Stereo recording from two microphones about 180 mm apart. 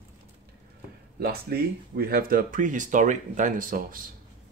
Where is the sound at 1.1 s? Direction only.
60° right (ahead or behind).